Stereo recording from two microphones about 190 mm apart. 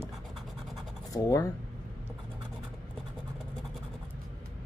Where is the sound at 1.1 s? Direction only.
15° left (ahead or behind).